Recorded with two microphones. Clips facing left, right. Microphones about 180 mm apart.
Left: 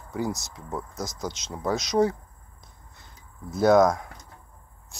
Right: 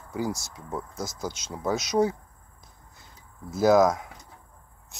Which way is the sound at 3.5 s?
5° right (ahead or behind).